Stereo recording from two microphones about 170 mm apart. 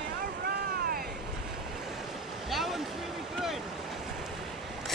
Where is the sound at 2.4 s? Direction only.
Centre (ahead or behind).